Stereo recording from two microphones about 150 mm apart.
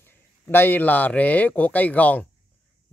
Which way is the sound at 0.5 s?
15° left (ahead or behind).